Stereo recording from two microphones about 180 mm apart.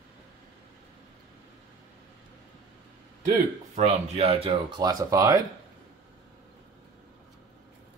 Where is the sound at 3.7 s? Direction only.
40° right (ahead or behind).